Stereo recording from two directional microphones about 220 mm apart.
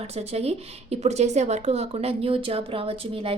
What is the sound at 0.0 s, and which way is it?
Speech, 30° right (ahead or behind).